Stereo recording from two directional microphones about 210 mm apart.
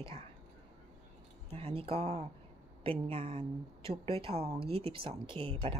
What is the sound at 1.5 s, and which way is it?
A woman's voice, 25° right (ahead or behind).